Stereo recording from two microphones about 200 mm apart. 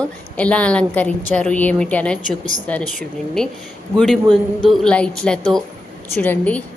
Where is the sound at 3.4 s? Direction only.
Centre (ahead or behind).